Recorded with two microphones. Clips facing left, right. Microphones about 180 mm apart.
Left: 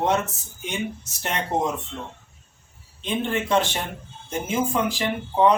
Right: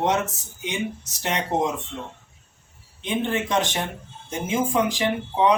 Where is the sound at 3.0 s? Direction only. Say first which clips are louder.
Right 1 dB; 15° right (ahead or behind).